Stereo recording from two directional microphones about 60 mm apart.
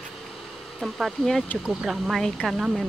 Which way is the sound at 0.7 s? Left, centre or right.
Centre.